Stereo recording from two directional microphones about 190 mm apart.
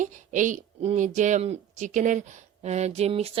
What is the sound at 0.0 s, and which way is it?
Speech, 40° right (ahead or behind).